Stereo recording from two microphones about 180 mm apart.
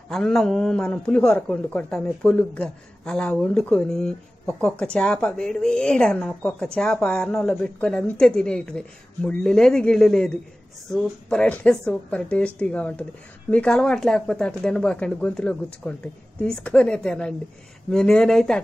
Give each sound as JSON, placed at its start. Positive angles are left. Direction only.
{"t": 0.1, "sound": "a man's voice", "side_deg": 5}